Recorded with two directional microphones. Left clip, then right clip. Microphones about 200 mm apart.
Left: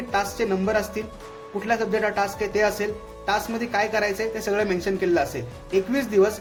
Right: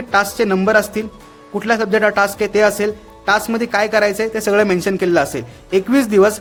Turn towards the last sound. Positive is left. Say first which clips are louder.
# right 8 dB
turn(degrees=-50)  # may be behind; listen again after turning